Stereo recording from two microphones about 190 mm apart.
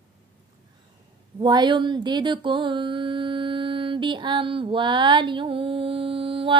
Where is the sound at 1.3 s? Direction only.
25° right (ahead or behind).